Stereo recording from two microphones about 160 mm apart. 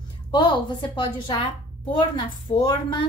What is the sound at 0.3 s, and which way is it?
A woman's voice, 25° left (ahead or behind).